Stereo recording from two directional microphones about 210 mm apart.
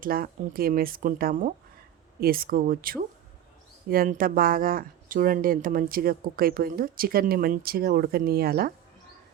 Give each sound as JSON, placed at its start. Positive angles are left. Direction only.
{"t": 0.0, "sound": "speech", "side_deg": -45}